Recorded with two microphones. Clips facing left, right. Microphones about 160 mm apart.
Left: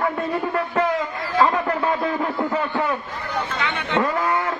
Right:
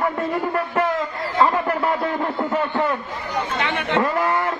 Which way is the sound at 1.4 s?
20° right (ahead or behind).